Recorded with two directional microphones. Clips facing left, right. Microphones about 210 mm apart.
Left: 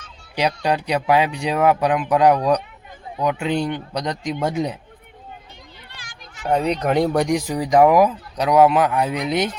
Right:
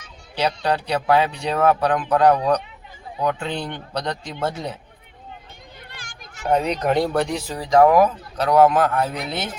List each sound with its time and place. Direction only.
0.3 s speech: 15° left (ahead or behind)
6.0 s a sound: 45° right (ahead or behind)
6.5 s speech: centre (ahead or behind)
7.0 s speech: 15° left (ahead or behind)